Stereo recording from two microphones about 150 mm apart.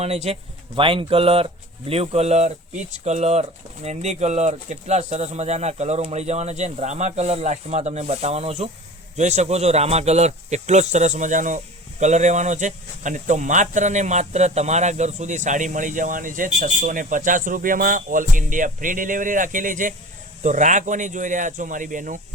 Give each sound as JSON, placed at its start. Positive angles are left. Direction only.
{"t": 0.0, "sound": "a man's voice", "side_deg": -45}